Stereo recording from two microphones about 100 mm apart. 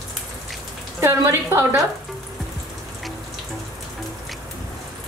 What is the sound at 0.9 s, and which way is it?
Speech, 25° right (ahead or behind).